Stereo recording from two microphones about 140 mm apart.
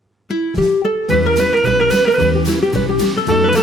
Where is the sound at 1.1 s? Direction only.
Centre (ahead or behind).